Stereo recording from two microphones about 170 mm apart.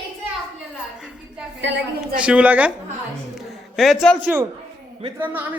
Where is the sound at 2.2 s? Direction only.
10° right (ahead or behind).